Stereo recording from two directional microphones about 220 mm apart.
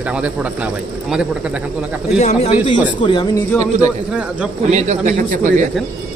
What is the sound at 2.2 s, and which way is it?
Speech, 30° left (ahead or behind).